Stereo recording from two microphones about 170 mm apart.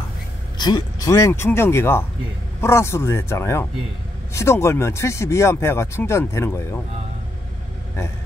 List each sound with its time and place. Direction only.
0.6 s speech: 25° left (ahead or behind)